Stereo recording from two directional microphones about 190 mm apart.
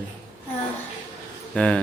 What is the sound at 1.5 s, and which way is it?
Speech, 5° left (ahead or behind).